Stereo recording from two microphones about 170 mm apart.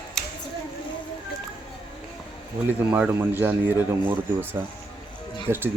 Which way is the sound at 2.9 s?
10° right (ahead or behind).